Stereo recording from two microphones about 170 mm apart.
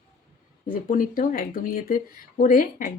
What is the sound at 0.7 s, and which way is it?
Speech, 55° left (ahead or behind).